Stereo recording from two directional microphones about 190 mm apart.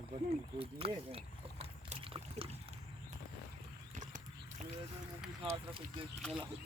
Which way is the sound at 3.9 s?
40° right (ahead or behind).